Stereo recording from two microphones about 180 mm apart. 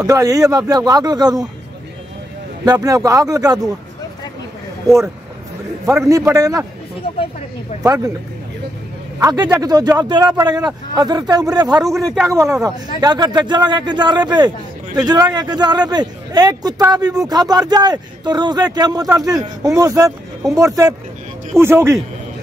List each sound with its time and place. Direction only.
0.0 s a man's voice: 20° right (ahead or behind)
2.6 s a man's voice: 20° right (ahead or behind)
4.8 s a man's voice: 15° right (ahead or behind)
7.8 s a man's voice: 20° right (ahead or behind)
9.2 s a man's voice: 20° right (ahead or behind)
11.9 s a man's voice: centre (ahead or behind)
12.3 s a man's voice: 15° right (ahead or behind)